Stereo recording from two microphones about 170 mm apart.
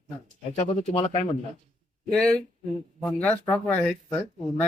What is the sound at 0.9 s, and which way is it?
Speech, 35° left (ahead or behind).